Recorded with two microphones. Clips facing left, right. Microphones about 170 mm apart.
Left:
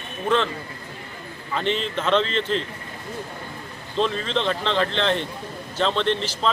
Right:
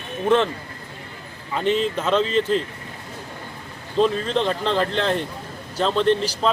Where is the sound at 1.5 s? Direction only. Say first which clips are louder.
Right 4 dB; 5° right (ahead or behind).